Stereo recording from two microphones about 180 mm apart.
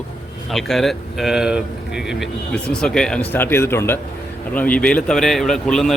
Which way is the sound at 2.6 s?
5° left (ahead or behind).